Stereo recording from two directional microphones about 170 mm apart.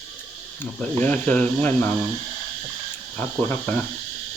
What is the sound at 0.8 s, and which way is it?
Speech, 10° left (ahead or behind).